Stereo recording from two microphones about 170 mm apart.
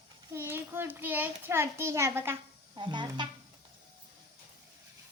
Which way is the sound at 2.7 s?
25° right (ahead or behind).